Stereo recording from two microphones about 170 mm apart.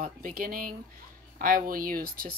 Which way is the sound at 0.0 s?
55° right (ahead or behind).